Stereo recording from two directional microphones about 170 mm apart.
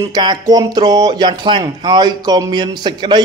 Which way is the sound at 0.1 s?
25° right (ahead or behind).